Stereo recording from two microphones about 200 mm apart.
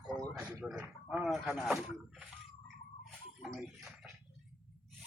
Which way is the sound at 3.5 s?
Centre (ahead or behind).